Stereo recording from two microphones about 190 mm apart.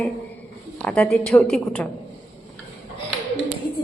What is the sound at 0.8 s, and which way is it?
A woman's voice, 5° left (ahead or behind).